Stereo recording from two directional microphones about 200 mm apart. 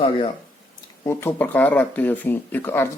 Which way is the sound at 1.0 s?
10° left (ahead or behind).